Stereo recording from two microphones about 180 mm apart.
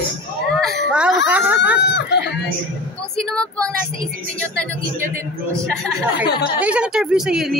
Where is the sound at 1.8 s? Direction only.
70° left (ahead or behind).